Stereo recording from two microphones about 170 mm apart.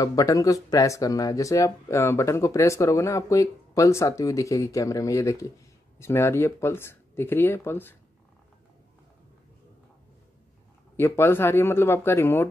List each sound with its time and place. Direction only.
0.0 s speech: 20° left (ahead or behind)
11.0 s speech: 15° left (ahead or behind)